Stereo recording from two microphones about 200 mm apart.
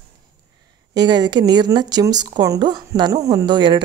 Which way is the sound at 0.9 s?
20° right (ahead or behind).